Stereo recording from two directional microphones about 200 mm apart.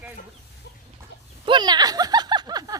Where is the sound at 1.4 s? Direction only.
20° right (ahead or behind).